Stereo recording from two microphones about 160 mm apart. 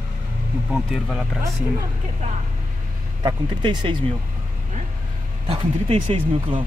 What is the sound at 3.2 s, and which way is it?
Speech, 25° right (ahead or behind).